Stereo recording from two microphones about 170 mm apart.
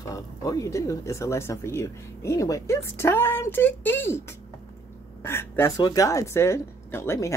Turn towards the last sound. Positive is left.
turn(degrees=15)  # may be behind; listen again after turning